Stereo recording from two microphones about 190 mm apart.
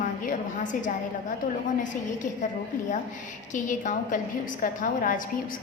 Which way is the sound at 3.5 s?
40° left (ahead or behind).